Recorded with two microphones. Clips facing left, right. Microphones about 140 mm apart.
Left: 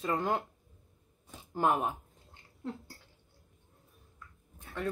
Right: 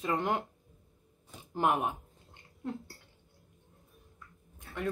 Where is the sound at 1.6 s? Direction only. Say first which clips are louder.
Even; 15° right (ahead or behind).